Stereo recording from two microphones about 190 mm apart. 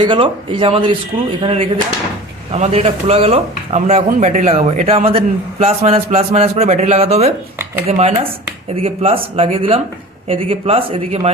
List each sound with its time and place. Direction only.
0.0 s speech: 25° right (ahead or behind)